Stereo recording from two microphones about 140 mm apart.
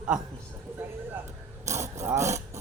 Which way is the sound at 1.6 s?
20° right (ahead or behind).